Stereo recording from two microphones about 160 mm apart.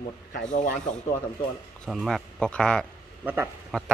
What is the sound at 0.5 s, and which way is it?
Speech, 50° left (ahead or behind).